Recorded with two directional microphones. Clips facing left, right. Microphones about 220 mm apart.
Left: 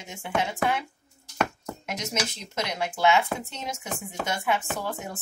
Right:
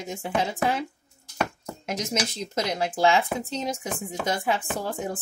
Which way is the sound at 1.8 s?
35° right (ahead or behind).